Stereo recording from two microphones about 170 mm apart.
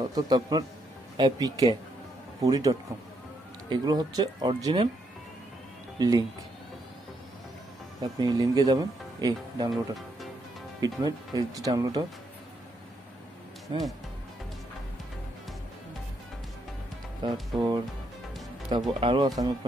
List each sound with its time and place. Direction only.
0.1 s speech: 25° right (ahead or behind)
5.9 s speech: 20° right (ahead or behind)
8.0 s speech: 25° right (ahead or behind)
10.8 s speech: 20° right (ahead or behind)
13.7 s speech: 30° right (ahead or behind)
17.2 s speech: 25° right (ahead or behind)
18.9 s speech: 30° right (ahead or behind)